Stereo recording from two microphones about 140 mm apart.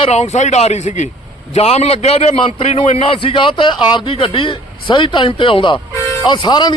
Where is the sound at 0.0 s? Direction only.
50° left (ahead or behind).